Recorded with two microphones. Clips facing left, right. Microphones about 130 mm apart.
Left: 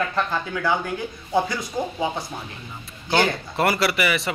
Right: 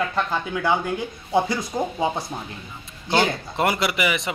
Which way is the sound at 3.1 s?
20° right (ahead or behind).